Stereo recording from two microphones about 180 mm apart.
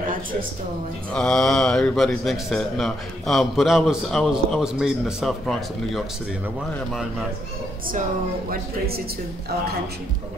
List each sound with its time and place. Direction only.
1.1 s a man's voice: 5° left (ahead or behind)
8.5 s speech: 60° right (ahead or behind)